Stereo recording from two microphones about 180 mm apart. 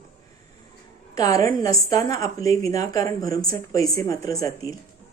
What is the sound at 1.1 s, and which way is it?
A woman's voice, 20° left (ahead or behind).